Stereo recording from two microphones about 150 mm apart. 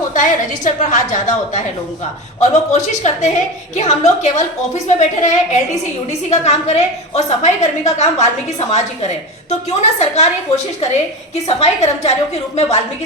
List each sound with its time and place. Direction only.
0.1 s a woman's voice: 55° left (ahead or behind)
11.4 s a woman's voice: 45° left (ahead or behind)